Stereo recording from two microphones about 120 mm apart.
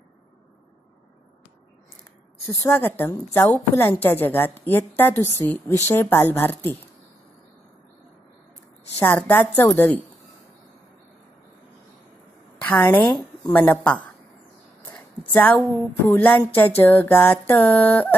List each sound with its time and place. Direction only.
2.6 s a woman's voice: 20° left (ahead or behind)
9.0 s a woman's voice: 15° left (ahead or behind)
12.6 s a woman's voice: 15° left (ahead or behind)
14.8 s a sound: 20° left (ahead or behind)
15.3 s a woman's voice: 15° left (ahead or behind)